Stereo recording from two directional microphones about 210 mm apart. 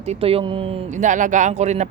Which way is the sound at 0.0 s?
30° right (ahead or behind).